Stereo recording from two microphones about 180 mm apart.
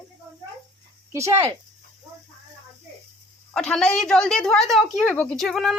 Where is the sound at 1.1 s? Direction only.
15° right (ahead or behind).